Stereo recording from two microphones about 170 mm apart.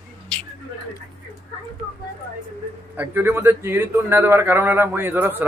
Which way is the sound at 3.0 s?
10° right (ahead or behind).